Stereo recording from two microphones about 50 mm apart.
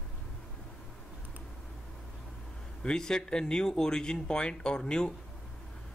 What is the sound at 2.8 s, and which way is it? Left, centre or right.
Speech, centre.